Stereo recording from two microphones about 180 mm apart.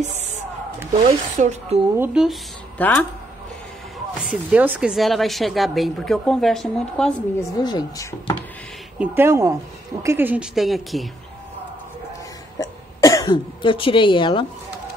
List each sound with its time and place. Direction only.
0.9 s a woman's voice: 40° right (ahead or behind)
2.0 s a woman's voice: 5° right (ahead or behind)
2.8 s speech: 10° left (ahead or behind)
4.3 s a woman's voice: 10° right (ahead or behind)
7.3 s a woman's voice: 20° left (ahead or behind)
8.9 s a woman's voice: 10° right (ahead or behind)
12.5 s cough: 20° left (ahead or behind)